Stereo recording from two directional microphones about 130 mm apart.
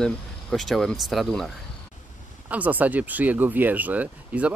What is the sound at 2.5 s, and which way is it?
Speech, 10° right (ahead or behind).